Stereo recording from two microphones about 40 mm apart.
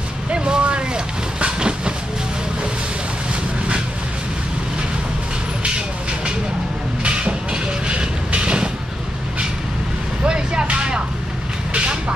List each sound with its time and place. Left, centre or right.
0.3 s vehicle: right
7.0 s vehicle: right
10.2 s vehicle: right